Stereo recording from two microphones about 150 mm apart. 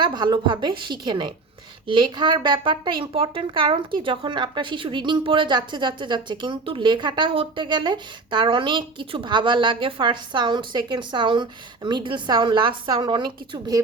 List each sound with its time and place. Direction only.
0.0 s speech: 30° right (ahead or behind)